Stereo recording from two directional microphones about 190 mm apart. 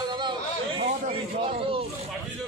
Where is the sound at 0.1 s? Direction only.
25° right (ahead or behind).